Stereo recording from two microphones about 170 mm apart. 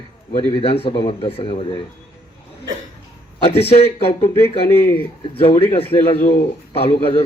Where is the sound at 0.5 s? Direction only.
35° left (ahead or behind).